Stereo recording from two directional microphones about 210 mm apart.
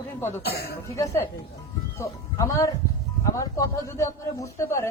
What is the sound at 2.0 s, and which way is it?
A man's voice, 15° left (ahead or behind).